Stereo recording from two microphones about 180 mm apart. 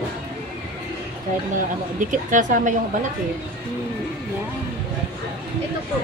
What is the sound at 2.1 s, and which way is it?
Speech, 45° right (ahead or behind).